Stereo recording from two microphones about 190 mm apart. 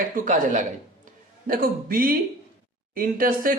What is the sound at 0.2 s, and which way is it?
A man's voice, 40° right (ahead or behind).